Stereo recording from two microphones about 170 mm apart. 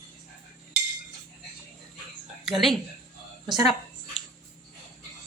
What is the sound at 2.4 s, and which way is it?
Speech, centre (ahead or behind).